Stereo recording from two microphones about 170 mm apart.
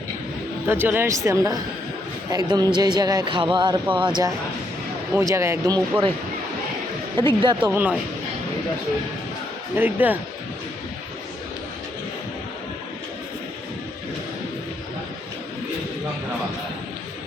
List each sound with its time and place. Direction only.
0.7 s a man's voice: 10° right (ahead or behind)
5.3 s speech: 15° right (ahead or behind)
7.2 s a man's voice: 30° right (ahead or behind)
7.6 s speech: 10° right (ahead or behind)
9.7 s speech: 10° right (ahead or behind)